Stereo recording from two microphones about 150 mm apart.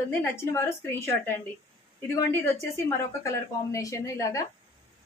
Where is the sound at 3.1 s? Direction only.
20° left (ahead or behind).